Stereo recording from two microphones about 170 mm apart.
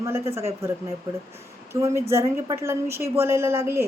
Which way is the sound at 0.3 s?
15° right (ahead or behind).